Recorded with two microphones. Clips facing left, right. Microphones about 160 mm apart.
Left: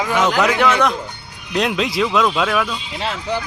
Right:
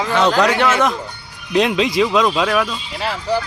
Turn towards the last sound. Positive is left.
turn(degrees=20)  # may be behind; listen again after turning